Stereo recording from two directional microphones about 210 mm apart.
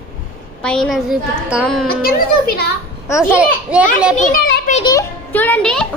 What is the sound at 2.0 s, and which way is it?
Speech, 45° left (ahead or behind).